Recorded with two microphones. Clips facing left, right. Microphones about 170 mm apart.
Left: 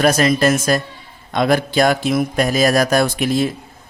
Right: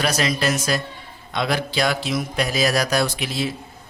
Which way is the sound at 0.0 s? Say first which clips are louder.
Left 7 dB; 50° left (ahead or behind).